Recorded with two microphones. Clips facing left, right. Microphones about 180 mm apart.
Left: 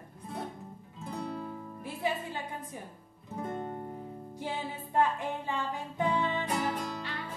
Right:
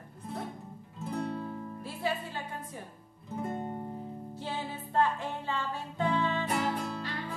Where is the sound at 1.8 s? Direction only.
15° left (ahead or behind).